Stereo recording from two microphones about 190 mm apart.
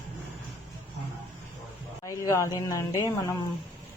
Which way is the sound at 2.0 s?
15° left (ahead or behind).